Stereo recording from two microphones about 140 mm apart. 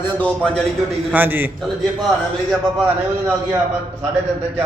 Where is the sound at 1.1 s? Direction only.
15° right (ahead or behind).